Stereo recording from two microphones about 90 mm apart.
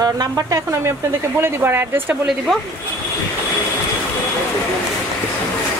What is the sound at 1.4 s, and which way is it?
Speech, 25° right (ahead or behind).